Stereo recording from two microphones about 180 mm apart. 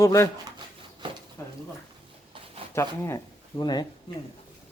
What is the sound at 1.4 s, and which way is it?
Speech, 15° left (ahead or behind).